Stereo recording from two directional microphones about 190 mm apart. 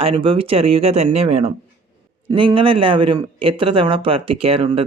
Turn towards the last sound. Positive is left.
turn(degrees=-30)  # may be behind; listen again after turning